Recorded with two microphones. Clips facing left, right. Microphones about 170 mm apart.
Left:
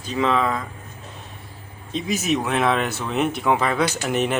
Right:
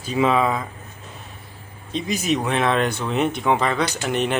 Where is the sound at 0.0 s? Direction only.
10° right (ahead or behind).